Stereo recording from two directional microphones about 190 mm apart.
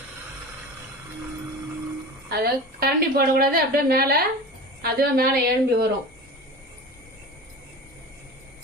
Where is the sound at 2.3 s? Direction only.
55° right (ahead or behind).